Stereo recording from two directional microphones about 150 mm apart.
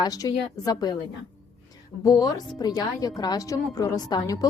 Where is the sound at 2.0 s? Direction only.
25° left (ahead or behind).